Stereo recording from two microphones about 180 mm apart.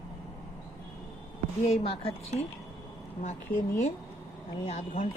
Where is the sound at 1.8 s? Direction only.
35° left (ahead or behind).